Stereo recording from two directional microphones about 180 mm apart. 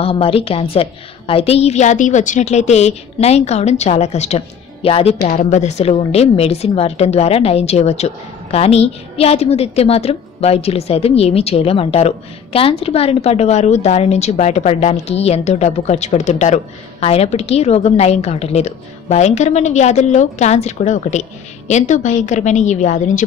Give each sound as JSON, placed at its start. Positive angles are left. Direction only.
{"t": 0.0, "sound": "a woman's voice", "side_deg": 30}
{"t": 5.2, "sound": "a woman's voice", "side_deg": 45}